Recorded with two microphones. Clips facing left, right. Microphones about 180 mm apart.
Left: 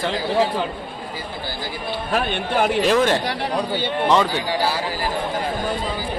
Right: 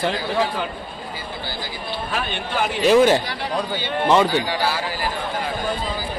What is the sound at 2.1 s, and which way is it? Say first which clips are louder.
Speech: left 5 dB; 50° left (ahead or behind).